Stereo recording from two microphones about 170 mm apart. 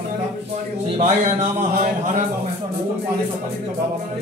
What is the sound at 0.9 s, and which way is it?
Speech, 40° right (ahead or behind).